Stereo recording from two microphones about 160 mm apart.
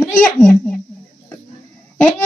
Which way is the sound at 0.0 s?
10° left (ahead or behind).